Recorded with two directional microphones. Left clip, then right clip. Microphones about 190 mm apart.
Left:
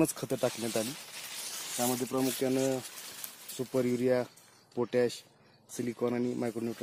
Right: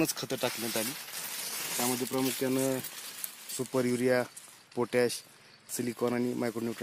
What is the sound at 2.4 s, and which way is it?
Speech, 35° right (ahead or behind).